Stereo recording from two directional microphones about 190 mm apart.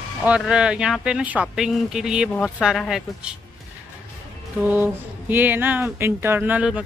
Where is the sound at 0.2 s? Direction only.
5° right (ahead or behind).